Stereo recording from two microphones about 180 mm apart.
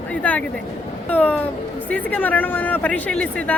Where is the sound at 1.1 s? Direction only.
10° left (ahead or behind).